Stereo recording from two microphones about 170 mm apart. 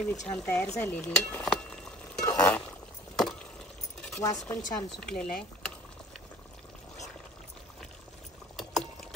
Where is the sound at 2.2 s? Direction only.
20° left (ahead or behind).